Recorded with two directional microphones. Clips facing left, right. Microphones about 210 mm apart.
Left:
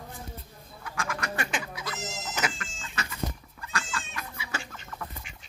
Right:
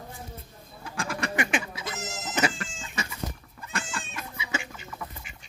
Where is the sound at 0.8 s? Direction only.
30° right (ahead or behind).